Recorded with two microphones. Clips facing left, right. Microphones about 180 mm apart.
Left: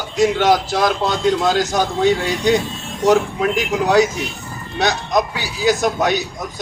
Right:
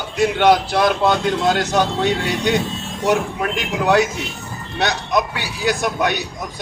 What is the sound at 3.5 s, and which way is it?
Speech, 60° right (ahead or behind).